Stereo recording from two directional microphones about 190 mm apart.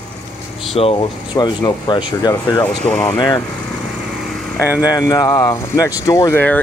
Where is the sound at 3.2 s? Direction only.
20° left (ahead or behind).